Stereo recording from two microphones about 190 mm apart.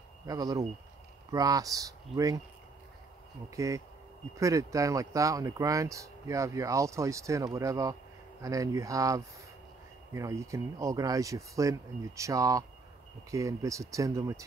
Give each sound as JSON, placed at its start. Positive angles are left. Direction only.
{"t": 0.3, "sound": "speech", "side_deg": -20}
{"t": 3.4, "sound": "speech", "side_deg": -15}